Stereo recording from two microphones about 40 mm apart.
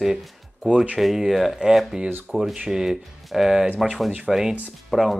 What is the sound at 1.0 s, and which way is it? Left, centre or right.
Speech, centre.